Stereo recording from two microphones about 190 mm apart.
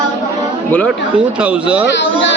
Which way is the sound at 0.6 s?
10° left (ahead or behind).